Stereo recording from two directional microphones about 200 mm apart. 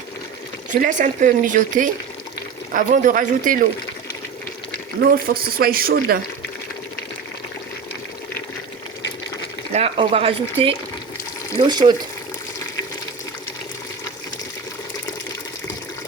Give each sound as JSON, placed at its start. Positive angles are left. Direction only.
{"t": 0.7, "sound": "speech", "side_deg": -40}
{"t": 5.2, "sound": "speech", "side_deg": -50}
{"t": 9.7, "sound": "speech", "side_deg": -30}